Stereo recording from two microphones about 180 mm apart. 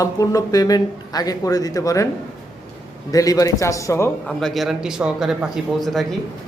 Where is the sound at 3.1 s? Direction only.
20° left (ahead or behind).